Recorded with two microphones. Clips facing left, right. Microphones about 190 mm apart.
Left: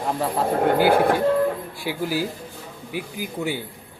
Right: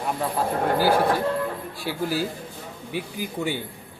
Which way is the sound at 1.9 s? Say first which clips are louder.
Left 1 dB; 15° left (ahead or behind).